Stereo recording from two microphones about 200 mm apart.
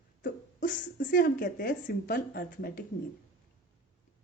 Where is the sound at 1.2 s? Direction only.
55° left (ahead or behind).